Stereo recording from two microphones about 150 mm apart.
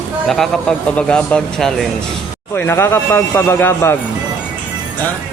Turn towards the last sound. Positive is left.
turn(degrees=15)  # may be behind; listen again after turning